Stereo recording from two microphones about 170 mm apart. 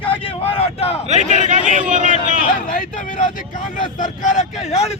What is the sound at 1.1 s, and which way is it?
A man's voice, 45° right (ahead or behind).